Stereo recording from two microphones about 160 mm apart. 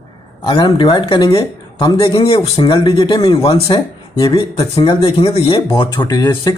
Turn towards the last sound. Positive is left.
turn(degrees=25)  # may be behind; listen again after turning